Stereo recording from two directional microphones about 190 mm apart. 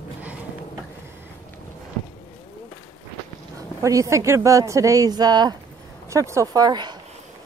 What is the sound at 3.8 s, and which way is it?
Speech, 15° right (ahead or behind).